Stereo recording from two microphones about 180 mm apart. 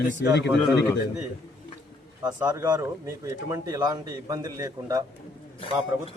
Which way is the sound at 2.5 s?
20° right (ahead or behind).